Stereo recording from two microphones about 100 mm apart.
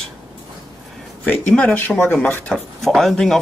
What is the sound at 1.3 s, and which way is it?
Speech, 15° left (ahead or behind).